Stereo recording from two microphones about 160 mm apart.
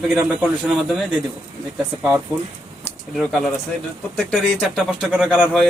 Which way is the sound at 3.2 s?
5° left (ahead or behind).